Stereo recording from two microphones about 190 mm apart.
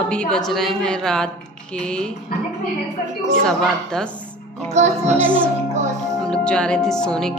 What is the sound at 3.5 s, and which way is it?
A woman's voice, 5° left (ahead or behind).